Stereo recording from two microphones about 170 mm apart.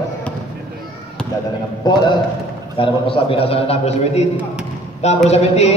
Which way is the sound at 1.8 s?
25° left (ahead or behind).